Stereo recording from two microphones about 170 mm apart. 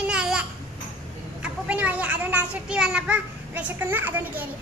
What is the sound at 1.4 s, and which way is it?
Children playing, 5° right (ahead or behind).